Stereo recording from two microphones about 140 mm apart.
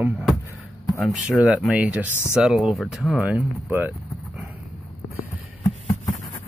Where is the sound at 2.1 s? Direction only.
20° left (ahead or behind).